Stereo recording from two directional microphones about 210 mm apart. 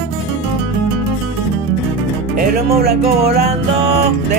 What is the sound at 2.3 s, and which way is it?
Music, 45° right (ahead or behind).